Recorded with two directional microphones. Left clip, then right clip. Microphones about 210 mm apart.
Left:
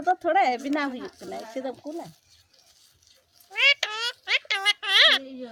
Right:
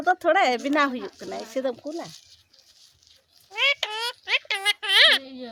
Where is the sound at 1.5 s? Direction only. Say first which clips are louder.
Right 7 dB; 30° right (ahead or behind).